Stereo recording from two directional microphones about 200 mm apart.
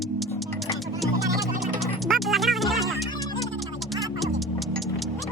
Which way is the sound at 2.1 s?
Centre (ahead or behind).